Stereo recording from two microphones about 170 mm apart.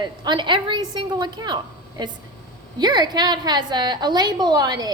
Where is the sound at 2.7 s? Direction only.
25° right (ahead or behind).